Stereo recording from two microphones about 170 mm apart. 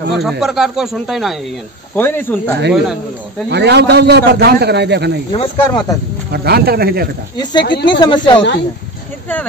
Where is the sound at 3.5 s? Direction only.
85° right.